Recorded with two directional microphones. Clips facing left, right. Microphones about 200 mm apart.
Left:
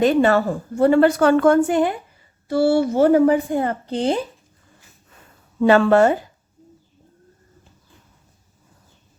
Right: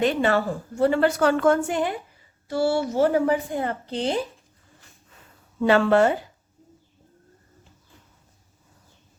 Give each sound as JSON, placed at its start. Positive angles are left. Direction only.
{"t": 0.0, "sound": "a woman's voice", "side_deg": 45}
{"t": 5.5, "sound": "a woman's voice", "side_deg": 45}